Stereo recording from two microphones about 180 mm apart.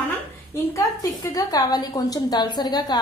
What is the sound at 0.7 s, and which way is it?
A woman's voice, 20° left (ahead or behind).